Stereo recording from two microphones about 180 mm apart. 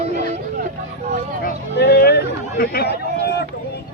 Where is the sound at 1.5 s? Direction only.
60° left (ahead or behind).